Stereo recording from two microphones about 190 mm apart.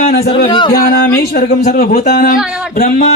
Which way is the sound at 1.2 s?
60° left (ahead or behind).